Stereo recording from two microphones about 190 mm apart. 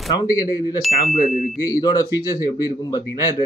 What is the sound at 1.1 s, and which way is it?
Speech, 45° left (ahead or behind).